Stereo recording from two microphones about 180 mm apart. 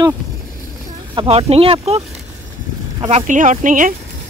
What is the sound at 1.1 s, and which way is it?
Speech, 35° right (ahead or behind).